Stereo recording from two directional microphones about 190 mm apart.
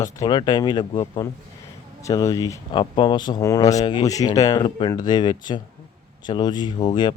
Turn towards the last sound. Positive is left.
turn(degrees=25)  # may be behind; listen again after turning